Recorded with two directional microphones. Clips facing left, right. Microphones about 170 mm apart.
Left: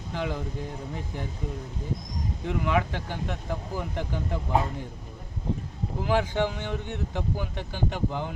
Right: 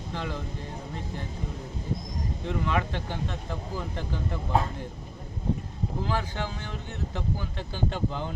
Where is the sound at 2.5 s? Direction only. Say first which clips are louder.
Left 2 dB; 15° left (ahead or behind).